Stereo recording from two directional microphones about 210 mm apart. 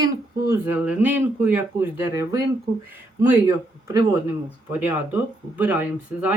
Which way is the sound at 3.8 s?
15° right (ahead or behind).